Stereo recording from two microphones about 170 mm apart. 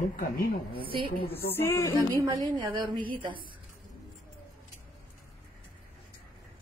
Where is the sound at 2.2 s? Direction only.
25° right (ahead or behind).